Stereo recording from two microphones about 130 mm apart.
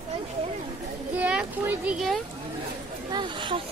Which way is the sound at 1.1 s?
10° right (ahead or behind).